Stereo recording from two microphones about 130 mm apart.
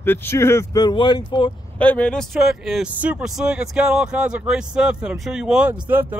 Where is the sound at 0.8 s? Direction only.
40° left (ahead or behind).